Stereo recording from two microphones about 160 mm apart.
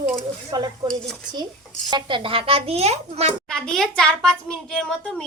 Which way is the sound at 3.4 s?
5° left (ahead or behind).